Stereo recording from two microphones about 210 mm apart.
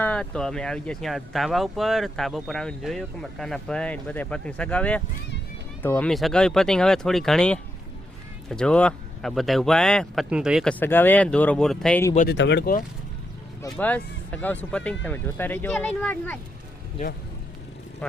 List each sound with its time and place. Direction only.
0.0 s speech: 5° left (ahead or behind)
12.3 s speech: 55° left (ahead or behind)
13.7 s speech: 5° left (ahead or behind)